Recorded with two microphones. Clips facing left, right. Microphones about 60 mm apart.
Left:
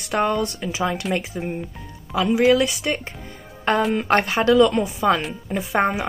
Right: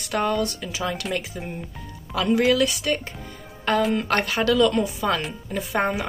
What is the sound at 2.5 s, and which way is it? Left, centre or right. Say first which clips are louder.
Speech: left 1 dB; left.